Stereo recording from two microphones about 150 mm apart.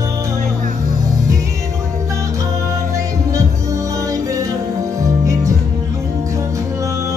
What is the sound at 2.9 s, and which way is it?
Music, 20° right (ahead or behind).